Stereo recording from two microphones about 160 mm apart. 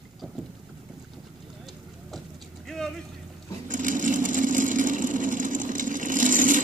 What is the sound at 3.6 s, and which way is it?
Sewing machine, 55° right (ahead or behind).